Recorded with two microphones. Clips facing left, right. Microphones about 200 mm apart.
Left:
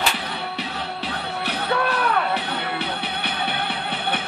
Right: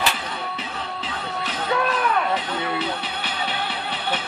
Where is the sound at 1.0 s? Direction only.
65° left (ahead or behind).